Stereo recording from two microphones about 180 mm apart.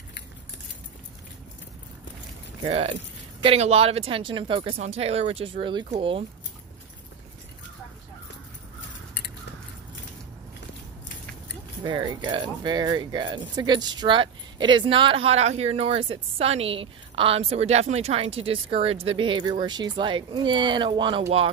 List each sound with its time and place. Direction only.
2.6 s speech: 30° right (ahead or behind)
11.8 s speech: 25° right (ahead or behind)